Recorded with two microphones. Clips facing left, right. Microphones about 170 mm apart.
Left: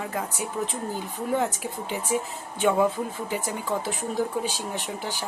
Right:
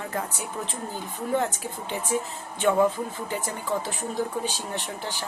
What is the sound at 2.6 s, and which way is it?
Speech, 10° left (ahead or behind).